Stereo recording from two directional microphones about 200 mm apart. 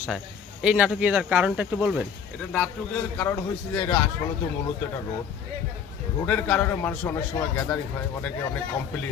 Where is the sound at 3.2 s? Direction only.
15° left (ahead or behind).